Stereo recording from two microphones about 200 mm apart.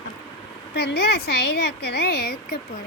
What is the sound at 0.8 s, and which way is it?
A woman's voice, 55° left (ahead or behind).